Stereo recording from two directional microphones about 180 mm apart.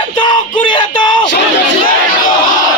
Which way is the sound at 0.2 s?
25° left (ahead or behind).